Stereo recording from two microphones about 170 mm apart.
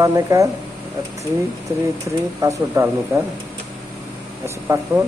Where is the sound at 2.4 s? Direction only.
20° right (ahead or behind).